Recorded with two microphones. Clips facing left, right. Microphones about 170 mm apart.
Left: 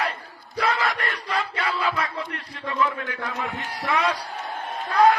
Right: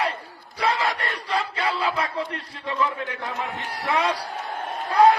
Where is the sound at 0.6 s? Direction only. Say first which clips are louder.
Even; 30° right (ahead or behind).